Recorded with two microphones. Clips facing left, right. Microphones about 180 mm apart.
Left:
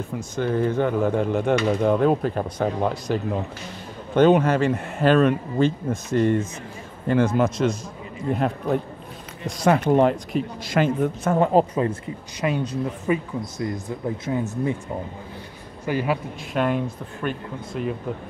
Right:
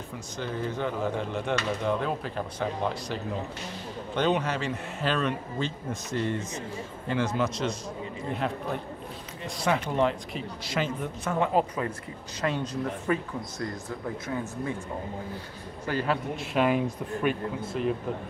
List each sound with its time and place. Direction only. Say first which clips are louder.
0.4 s speech: left 9 dB; 55° left (ahead or behind)
9.6 s speech: left 8 dB; 50° left (ahead or behind)
11.7 s speech: left 8 dB; 25° left (ahead or behind)
12.4 s speech: left 5 dB; 10° left (ahead or behind)
15.8 s a man's voice: left 4 dB; 10° left (ahead or behind)
16.5 s speech: left 2 dB; 5° right (ahead or behind)